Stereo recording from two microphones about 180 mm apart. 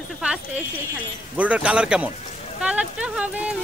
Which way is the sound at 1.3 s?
10° right (ahead or behind).